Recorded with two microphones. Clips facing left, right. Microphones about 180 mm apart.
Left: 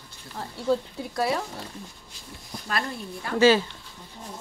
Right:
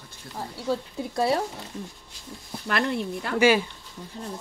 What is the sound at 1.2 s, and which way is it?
Speech, 30° right (ahead or behind).